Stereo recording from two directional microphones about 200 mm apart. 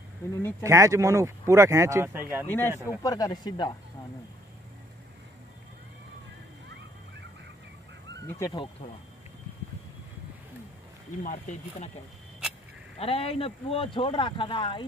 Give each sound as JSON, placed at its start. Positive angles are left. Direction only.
{"t": 0.4, "sound": "speech", "side_deg": 10}
{"t": 0.7, "sound": "speech", "side_deg": -15}
{"t": 2.4, "sound": "speech", "side_deg": 10}
{"t": 2.7, "sound": "speech", "side_deg": -10}
{"t": 3.0, "sound": "speech", "side_deg": 20}
{"t": 8.2, "sound": "speech", "side_deg": 15}
{"t": 11.2, "sound": "speech", "side_deg": 40}
{"t": 13.0, "sound": "speech", "side_deg": 30}